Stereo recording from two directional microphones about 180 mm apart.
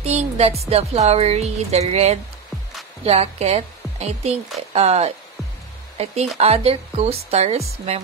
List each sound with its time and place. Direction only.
0.0 s speech: 35° right (ahead or behind)